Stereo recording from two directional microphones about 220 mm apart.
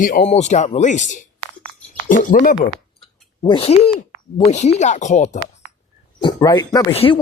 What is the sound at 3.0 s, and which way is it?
Speech, 25° left (ahead or behind).